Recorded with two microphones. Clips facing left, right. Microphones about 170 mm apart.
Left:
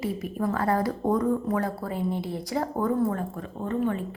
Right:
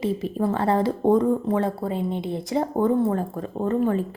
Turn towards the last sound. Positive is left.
turn(degrees=-40)  # may be behind; listen again after turning